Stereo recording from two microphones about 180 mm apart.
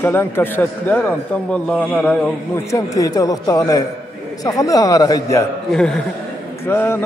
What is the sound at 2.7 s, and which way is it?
A man's voice, 20° left (ahead or behind).